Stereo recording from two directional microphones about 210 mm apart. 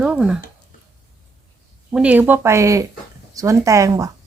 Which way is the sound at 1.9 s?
5° right (ahead or behind).